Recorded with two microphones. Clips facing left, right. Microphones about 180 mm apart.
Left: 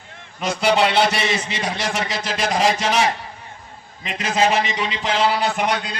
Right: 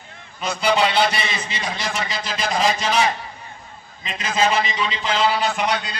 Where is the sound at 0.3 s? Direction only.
70° left (ahead or behind).